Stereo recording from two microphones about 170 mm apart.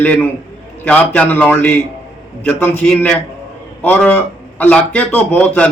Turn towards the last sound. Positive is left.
turn(degrees=10)  # may be behind; listen again after turning